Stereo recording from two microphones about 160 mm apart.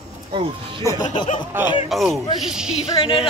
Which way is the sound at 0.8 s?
20° left (ahead or behind).